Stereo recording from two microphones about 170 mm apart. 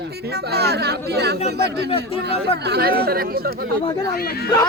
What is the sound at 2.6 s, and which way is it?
Speech, 70° right (ahead or behind).